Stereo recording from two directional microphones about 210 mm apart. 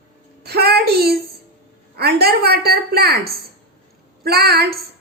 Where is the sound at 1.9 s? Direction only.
50° right (ahead or behind).